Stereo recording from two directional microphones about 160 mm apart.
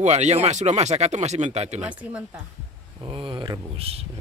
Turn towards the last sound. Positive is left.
turn(degrees=-40)  # may be behind; listen again after turning